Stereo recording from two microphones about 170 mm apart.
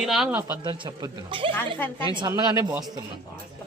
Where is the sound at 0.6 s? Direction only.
30° right (ahead or behind).